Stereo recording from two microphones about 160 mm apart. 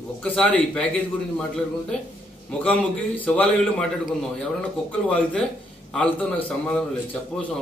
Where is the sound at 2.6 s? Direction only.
5° left (ahead or behind).